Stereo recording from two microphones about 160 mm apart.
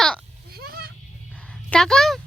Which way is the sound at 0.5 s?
75° right (ahead or behind).